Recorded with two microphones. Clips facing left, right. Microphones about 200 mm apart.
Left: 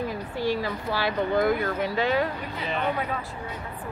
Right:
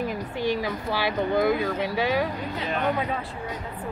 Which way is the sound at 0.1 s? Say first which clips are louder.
Right 1 dB; 20° right (ahead or behind).